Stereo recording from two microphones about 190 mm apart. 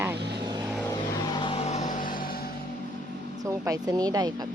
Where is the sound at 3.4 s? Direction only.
20° right (ahead or behind).